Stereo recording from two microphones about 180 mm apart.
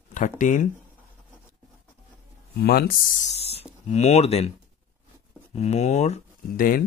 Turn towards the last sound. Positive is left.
turn(degrees=50)  # may be behind; listen again after turning